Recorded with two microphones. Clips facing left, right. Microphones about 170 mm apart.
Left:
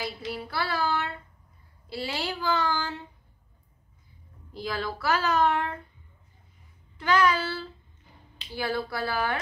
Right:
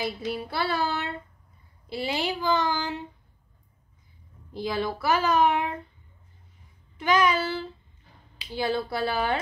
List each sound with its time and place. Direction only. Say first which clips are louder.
0.0 s child singing: right 4 dB; 25° right (ahead or behind)
1.9 s a child's voice: right 4 dB; 20° right (ahead or behind)
4.6 s a child's voice: right 4 dB; 20° right (ahead or behind)
7.0 s a child's voice: right 1 dB; 15° right (ahead or behind)
8.5 s child singing: right 3 dB; 25° right (ahead or behind)